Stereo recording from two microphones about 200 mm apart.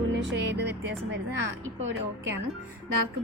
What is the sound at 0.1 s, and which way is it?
Music, 65° right (ahead or behind).